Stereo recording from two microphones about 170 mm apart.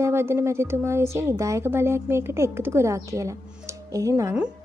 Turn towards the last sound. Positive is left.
turn(degrees=-20)  # may be behind; listen again after turning